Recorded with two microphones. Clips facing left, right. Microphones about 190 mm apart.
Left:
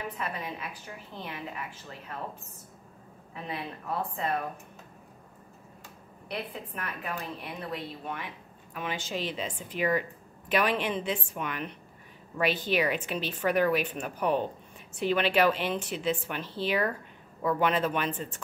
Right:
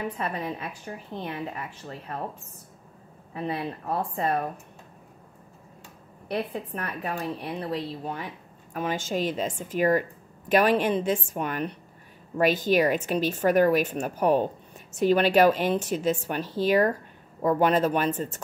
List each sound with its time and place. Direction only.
0.2 s speech: 40° right (ahead or behind)
3.4 s speech: 40° right (ahead or behind)
6.3 s speech: 40° right (ahead or behind)
8.7 s a woman's voice: 45° right (ahead or behind)